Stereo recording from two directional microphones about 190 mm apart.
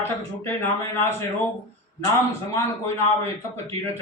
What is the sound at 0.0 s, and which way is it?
Speech, 10° left (ahead or behind).